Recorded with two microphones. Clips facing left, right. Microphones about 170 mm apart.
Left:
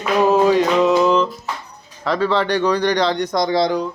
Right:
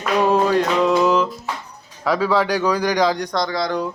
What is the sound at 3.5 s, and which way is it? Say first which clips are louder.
Speech: left 6 dB; 25° left (ahead or behind).